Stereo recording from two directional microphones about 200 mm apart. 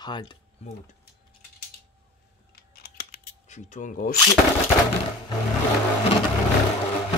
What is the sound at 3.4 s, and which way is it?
Speech, 35° left (ahead or behind).